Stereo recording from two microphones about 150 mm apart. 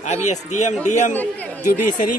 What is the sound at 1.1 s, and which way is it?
Speech, 10° left (ahead or behind).